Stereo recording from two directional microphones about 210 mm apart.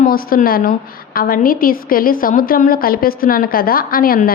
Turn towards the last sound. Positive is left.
turn(degrees=45)  # may be behind; listen again after turning